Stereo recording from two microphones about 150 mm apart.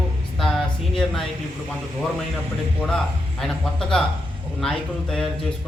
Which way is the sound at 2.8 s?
5° left (ahead or behind).